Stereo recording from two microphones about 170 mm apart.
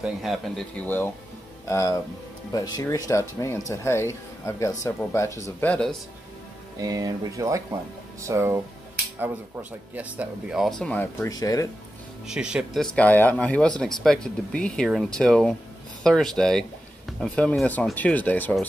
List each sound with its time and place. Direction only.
0.0 s speech: centre (ahead or behind)
6.8 s speech: 20° right (ahead or behind); by 11.2 s 10° left (ahead or behind)
11.2 s speech: 20° left (ahead or behind)
12.3 s speech: 5° right (ahead or behind)